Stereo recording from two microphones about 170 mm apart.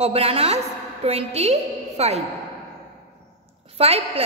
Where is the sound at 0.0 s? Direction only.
35° right (ahead or behind).